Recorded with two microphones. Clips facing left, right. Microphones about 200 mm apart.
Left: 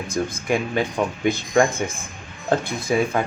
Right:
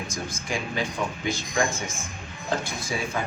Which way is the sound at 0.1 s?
55° left (ahead or behind).